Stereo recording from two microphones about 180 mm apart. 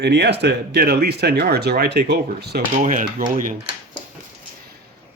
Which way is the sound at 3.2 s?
50° right (ahead or behind).